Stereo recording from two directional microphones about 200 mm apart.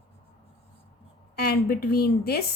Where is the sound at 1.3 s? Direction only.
50° left (ahead or behind).